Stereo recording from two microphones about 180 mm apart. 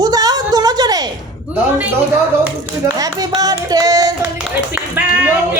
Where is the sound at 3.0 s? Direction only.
20° right (ahead or behind).